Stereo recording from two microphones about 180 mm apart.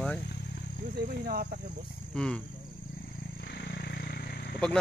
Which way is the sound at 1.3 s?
55° right (ahead or behind).